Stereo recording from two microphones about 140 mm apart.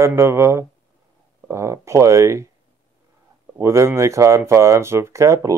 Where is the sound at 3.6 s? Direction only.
20° right (ahead or behind).